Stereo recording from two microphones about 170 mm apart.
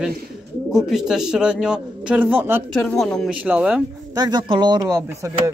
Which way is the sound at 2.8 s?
5° left (ahead or behind).